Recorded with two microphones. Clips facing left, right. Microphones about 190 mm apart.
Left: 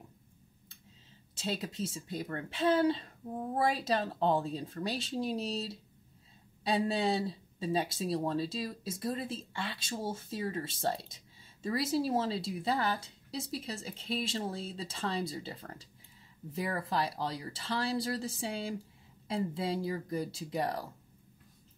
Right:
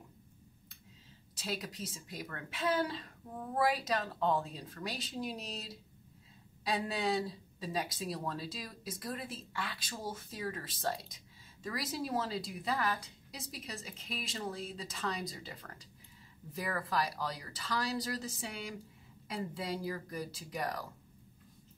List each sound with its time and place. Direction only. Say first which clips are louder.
1.3 s speech: left 4 dB; 25° left (ahead or behind)